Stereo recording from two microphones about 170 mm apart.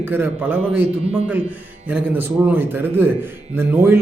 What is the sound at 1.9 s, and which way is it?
A man's voice, 10° right (ahead or behind).